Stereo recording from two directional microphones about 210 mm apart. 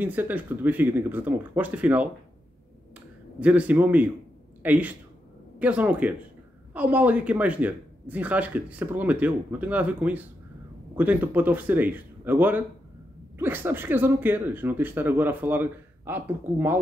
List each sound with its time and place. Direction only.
0.0 s speech: 10° right (ahead or behind)
3.3 s speech: 5° right (ahead or behind)